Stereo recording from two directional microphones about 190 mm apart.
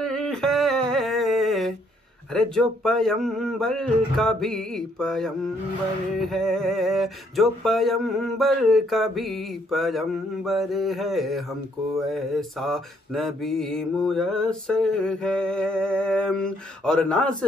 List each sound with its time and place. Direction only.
0.0 s humming: 5° left (ahead or behind)
2.3 s mantra: 5° left (ahead or behind)